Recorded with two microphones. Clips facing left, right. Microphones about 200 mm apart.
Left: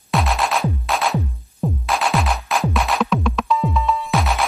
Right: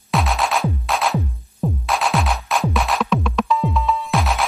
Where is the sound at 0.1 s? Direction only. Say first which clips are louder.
Even; centre (ahead or behind).